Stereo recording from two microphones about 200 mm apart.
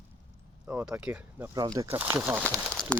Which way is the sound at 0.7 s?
5° right (ahead or behind).